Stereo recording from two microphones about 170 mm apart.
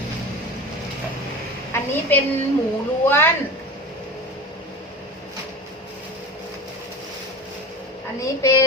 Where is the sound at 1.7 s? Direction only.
10° left (ahead or behind).